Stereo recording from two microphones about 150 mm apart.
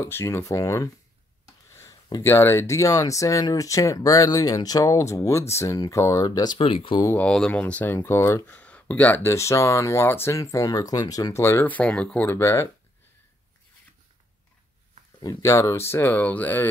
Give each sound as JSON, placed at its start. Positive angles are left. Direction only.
{"t": 0.0, "sound": "speech", "side_deg": 15}
{"t": 1.7, "sound": "a sound", "side_deg": 20}
{"t": 2.2, "sound": "speech", "side_deg": 15}
{"t": 6.6, "sound": "speech", "side_deg": 35}
{"t": 7.2, "sound": "speech", "side_deg": 5}
{"t": 15.1, "sound": "speech", "side_deg": 20}